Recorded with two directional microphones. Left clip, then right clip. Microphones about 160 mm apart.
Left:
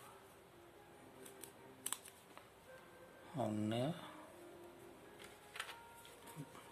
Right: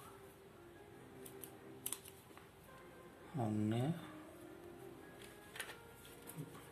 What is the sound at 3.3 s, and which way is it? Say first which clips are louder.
Speech: even; 35° left (ahead or behind).